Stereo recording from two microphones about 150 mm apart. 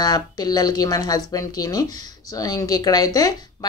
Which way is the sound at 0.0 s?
25° left (ahead or behind).